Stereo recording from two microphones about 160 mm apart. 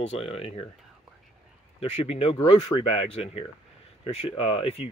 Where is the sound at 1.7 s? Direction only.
40° left (ahead or behind).